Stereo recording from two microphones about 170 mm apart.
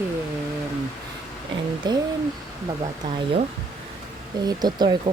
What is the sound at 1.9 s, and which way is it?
Speech, 25° right (ahead or behind).